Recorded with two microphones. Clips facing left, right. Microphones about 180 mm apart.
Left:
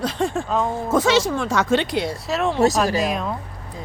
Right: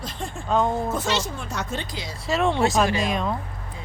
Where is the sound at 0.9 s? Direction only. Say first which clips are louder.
Left 8 dB; 90° left; by 2.1 s 65° left (ahead or behind).